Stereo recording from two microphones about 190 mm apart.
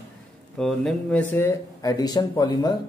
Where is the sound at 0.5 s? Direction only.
Centre (ahead or behind).